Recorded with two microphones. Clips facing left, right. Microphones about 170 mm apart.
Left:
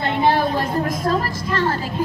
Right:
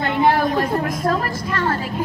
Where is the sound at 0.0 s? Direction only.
25° left (ahead or behind).